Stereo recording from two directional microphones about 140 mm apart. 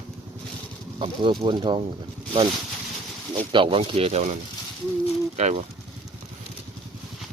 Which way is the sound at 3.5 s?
40° right (ahead or behind).